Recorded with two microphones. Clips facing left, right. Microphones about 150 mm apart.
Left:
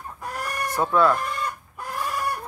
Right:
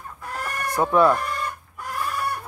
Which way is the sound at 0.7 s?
15° right (ahead or behind).